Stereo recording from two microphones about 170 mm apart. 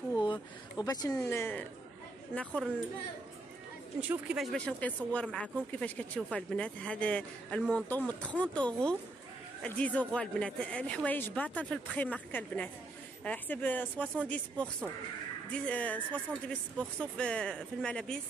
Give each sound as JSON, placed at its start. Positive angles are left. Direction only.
{"t": 0.1, "sound": "speech", "side_deg": 25}
{"t": 4.0, "sound": "speech", "side_deg": -5}